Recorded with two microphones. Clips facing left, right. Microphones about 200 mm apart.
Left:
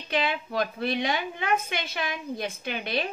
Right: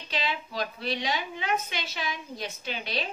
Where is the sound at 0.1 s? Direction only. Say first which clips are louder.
Left 5 dB; 55° left (ahead or behind).